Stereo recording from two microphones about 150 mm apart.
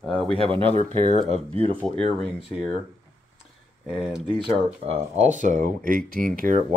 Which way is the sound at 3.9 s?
5° right (ahead or behind).